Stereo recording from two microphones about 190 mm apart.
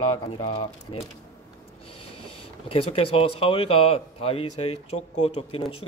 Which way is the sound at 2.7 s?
30° left (ahead or behind).